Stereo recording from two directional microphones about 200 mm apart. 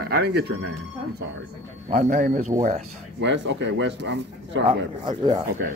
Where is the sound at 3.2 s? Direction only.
65° right (ahead or behind).